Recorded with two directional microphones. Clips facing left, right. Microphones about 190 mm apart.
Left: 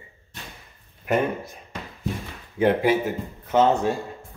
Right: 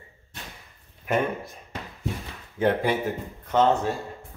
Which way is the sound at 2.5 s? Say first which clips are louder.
Left 3 dB; 10° left (ahead or behind).